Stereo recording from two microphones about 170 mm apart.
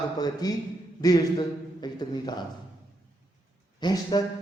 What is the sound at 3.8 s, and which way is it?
Speech, 25° left (ahead or behind).